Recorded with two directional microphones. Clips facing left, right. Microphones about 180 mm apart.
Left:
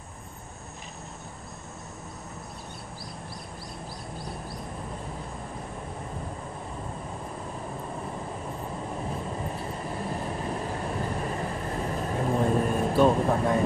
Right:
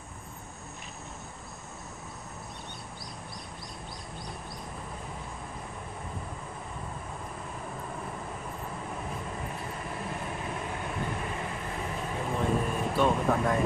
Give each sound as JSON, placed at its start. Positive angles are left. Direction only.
{"t": 8.9, "sound": "vehicle", "side_deg": 35}